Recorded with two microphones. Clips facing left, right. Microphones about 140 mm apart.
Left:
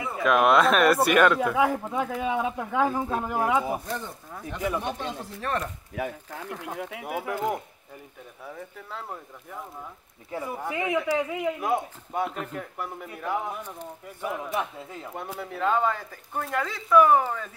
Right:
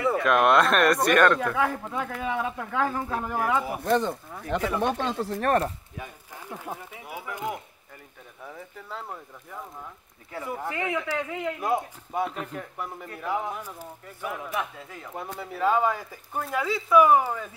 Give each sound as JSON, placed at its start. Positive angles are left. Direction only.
{"t": 0.2, "sound": "speech", "side_deg": 0}
{"t": 3.8, "sound": "speech", "side_deg": -70}
{"t": 4.5, "sound": "speech", "side_deg": -85}
{"t": 5.3, "sound": "speech", "side_deg": -50}
{"t": 5.9, "sound": "speech", "side_deg": 80}
{"t": 6.5, "sound": "speech", "side_deg": -5}
{"t": 6.8, "sound": "speech", "side_deg": 70}
{"t": 8.5, "sound": "speech", "side_deg": 0}
{"t": 11.6, "sound": "speech", "side_deg": 0}
{"t": 14.2, "sound": "a man's voice", "side_deg": 15}
{"t": 15.1, "sound": "speech", "side_deg": 0}